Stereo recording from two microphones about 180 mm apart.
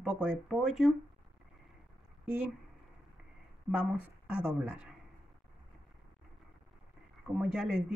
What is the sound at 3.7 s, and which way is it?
Speech, 5° right (ahead or behind).